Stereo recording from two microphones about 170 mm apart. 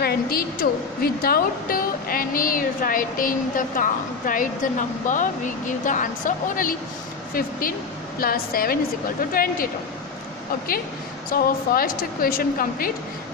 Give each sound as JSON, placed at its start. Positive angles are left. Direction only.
{"t": 0.0, "sound": "a woman's voice", "side_deg": 60}
{"t": 8.2, "sound": "a woman's voice", "side_deg": 60}
{"t": 11.2, "sound": "a woman's voice", "side_deg": 60}